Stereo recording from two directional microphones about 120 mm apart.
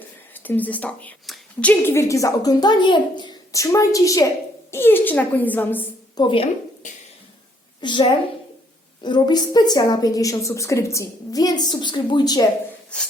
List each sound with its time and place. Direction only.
0.3 s a woman's voice: 15° left (ahead or behind); by 3.3 s 40° left (ahead or behind)
3.5 s a woman's voice: 25° left (ahead or behind)
6.1 s a woman's voice: 45° left (ahead or behind)
7.8 s a woman's voice: 40° left (ahead or behind)